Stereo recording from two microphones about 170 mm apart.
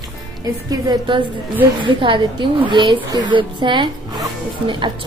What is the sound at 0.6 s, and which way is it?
Speech, 25° right (ahead or behind).